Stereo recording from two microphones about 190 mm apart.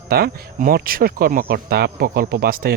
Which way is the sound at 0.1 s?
50° right (ahead or behind).